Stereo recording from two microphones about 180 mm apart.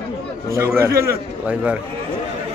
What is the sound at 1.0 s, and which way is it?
Speech, 10° right (ahead or behind).